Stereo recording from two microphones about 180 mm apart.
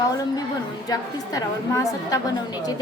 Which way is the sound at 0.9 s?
20° left (ahead or behind).